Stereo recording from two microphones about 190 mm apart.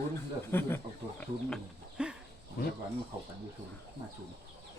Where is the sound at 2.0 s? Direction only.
5° right (ahead or behind).